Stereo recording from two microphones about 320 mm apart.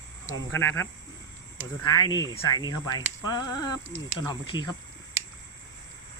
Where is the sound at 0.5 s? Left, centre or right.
Centre.